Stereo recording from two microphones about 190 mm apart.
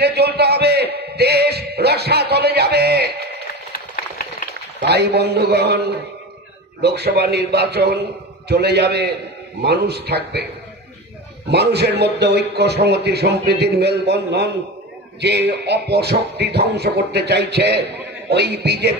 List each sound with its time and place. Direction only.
0.0 s a man's voice: 60° right (ahead or behind)
4.7 s a man's voice: 60° right (ahead or behind)